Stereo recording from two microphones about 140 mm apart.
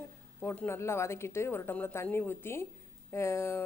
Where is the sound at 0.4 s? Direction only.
15° left (ahead or behind).